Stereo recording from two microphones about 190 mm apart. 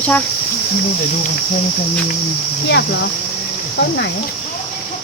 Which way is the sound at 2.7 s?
70° left (ahead or behind).